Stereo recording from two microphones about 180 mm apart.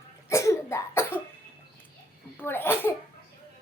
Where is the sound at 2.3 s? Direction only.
10° left (ahead or behind).